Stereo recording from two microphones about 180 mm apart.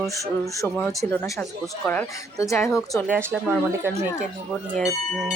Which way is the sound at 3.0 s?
10° right (ahead or behind).